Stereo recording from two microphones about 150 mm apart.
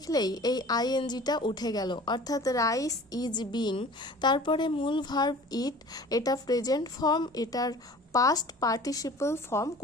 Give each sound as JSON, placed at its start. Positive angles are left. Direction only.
{"t": 0.1, "sound": "a woman's voice", "side_deg": 25}